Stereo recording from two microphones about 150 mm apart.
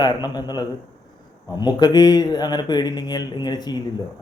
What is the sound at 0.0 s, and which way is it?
A man's voice, 30° left (ahead or behind).